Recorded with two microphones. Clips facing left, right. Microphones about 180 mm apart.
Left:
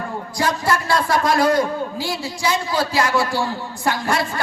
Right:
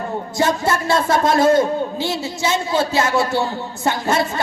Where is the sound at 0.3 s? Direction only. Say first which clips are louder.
Right 2 dB; 25° right (ahead or behind).